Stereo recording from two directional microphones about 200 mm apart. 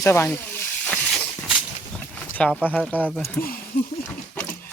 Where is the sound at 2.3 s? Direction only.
5° left (ahead or behind).